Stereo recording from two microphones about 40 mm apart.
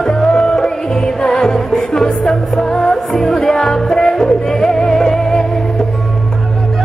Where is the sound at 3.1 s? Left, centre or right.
Centre.